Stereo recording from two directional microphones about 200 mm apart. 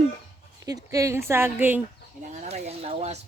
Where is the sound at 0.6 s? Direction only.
15° right (ahead or behind).